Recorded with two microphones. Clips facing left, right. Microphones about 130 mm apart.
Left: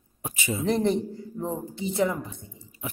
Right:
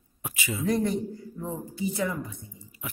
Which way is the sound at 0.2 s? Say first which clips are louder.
Left 2 dB; 25° left (ahead or behind).